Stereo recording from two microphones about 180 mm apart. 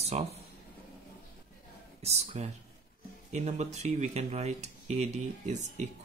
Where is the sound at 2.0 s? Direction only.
35° right (ahead or behind).